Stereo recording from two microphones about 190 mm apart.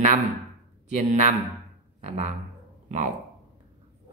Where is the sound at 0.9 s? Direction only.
40° right (ahead or behind).